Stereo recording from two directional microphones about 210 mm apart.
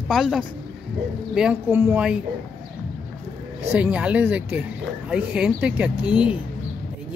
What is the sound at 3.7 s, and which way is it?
Speech, 5° right (ahead or behind).